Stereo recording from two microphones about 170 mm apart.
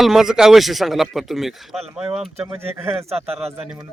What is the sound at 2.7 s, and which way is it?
Speech, 15° right (ahead or behind).